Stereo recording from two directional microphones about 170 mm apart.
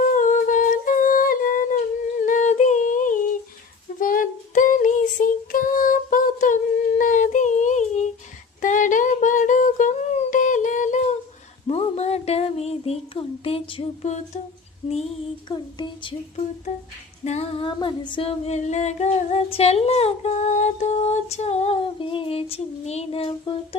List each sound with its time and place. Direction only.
0.0 s humming: 50° left (ahead or behind)
4.0 s child singing: 50° left (ahead or behind)
8.6 s humming: 50° left (ahead or behind)
11.7 s child singing: 40° left (ahead or behind)
15.4 s a sound: 25° left (ahead or behind)
17.2 s female singing: 40° left (ahead or behind)